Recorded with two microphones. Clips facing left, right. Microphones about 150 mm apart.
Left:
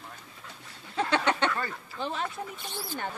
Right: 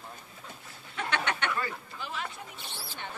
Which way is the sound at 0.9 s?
30° left (ahead or behind).